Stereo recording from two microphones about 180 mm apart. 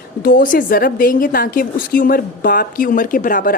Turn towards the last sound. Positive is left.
turn(degrees=50)  # may be behind; listen again after turning